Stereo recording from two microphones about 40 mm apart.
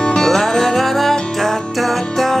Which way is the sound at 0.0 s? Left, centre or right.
Centre.